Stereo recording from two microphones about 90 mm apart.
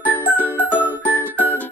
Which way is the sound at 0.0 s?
20° left (ahead or behind).